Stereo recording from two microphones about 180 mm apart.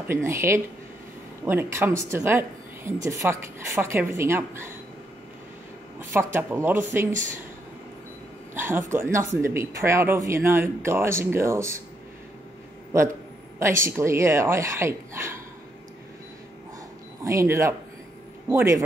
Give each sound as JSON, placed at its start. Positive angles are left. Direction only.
{"t": 0.1, "sound": "speech", "side_deg": -15}
{"t": 5.9, "sound": "speech", "side_deg": -15}
{"t": 8.5, "sound": "speech", "side_deg": -15}
{"t": 13.6, "sound": "speech", "side_deg": -15}
{"t": 17.2, "sound": "speech", "side_deg": -15}